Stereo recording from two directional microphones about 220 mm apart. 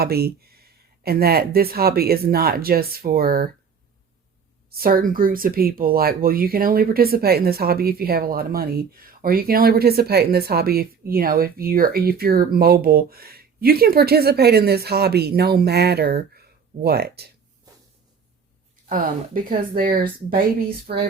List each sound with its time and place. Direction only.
0.0 s speech: 45° right (ahead or behind)
4.7 s speech: 40° right (ahead or behind)
18.9 s speech: 40° right (ahead or behind)